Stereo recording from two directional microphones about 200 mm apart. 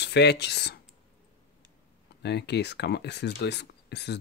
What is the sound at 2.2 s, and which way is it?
Speech, 55° left (ahead or behind).